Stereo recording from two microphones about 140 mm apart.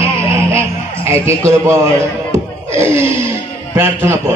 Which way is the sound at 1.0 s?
20° right (ahead or behind).